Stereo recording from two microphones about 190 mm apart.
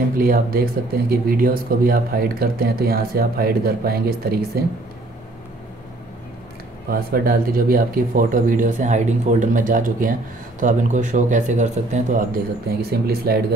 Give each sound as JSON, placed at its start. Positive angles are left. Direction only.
{"t": 0.2, "sound": "speech", "side_deg": -50}
{"t": 6.9, "sound": "speech", "side_deg": -50}
{"t": 12.9, "sound": "speech", "side_deg": -55}